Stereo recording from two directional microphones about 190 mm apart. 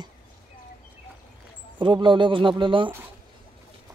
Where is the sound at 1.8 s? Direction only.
25° right (ahead or behind).